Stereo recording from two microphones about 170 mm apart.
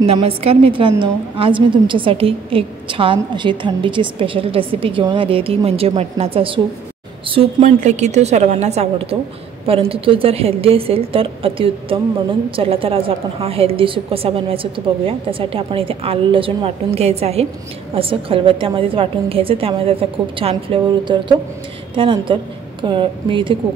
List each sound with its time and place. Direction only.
0.0 s a woman's voice: 35° right (ahead or behind)
7.6 s a woman's voice: 45° right (ahead or behind)